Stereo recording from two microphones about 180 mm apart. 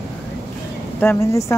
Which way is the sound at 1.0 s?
15° left (ahead or behind).